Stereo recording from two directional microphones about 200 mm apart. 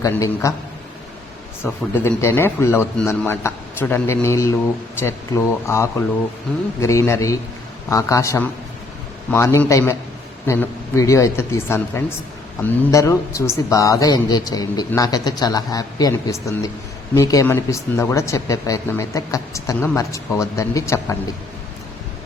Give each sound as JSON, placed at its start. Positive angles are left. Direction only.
{"t": 0.0, "sound": "speech", "side_deg": 15}
{"t": 1.9, "sound": "speech", "side_deg": 10}